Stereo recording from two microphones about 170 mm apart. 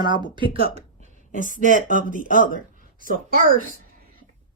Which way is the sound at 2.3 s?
55° left (ahead or behind).